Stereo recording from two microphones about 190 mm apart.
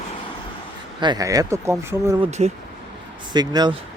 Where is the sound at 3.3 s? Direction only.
20° right (ahead or behind).